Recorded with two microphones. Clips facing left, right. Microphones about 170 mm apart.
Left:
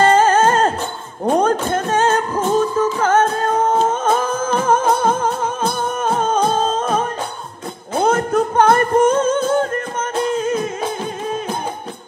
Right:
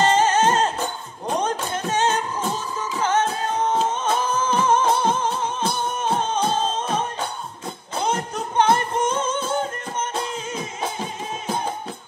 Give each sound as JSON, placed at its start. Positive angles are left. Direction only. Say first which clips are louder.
{"t": 0.0, "sound": "music", "louder": "left 5 dB", "side_deg": 55}
{"t": 7.9, "sound": "singing", "louder": "left 9 dB", "side_deg": 55}